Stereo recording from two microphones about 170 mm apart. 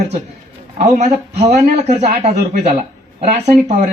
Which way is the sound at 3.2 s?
40° right (ahead or behind).